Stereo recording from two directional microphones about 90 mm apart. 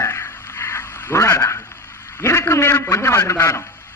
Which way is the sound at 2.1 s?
30° left (ahead or behind).